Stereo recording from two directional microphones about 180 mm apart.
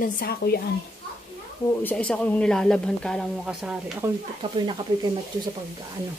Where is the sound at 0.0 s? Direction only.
60° left (ahead or behind).